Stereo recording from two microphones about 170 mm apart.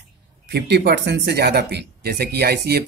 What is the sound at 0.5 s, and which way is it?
Speech, 75° right (ahead or behind).